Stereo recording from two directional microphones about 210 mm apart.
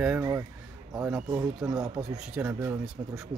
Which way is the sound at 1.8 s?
5° right (ahead or behind).